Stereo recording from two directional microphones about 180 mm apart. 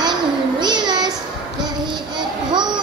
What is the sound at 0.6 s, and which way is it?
Child singing, 25° right (ahead or behind).